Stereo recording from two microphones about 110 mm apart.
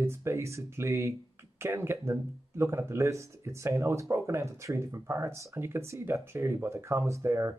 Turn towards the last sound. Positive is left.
turn(degrees=-25)  # may be behind; listen again after turning